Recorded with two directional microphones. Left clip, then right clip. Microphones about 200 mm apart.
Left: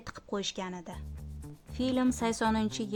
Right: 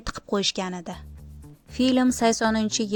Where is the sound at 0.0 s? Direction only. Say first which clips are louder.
Right 10 dB; 30° right (ahead or behind).